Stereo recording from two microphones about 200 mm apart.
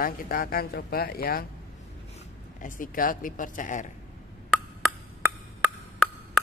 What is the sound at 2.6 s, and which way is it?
Speech, 40° left (ahead or behind).